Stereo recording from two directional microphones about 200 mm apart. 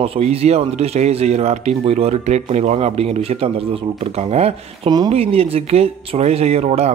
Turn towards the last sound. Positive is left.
turn(degrees=-30)  # may be behind; listen again after turning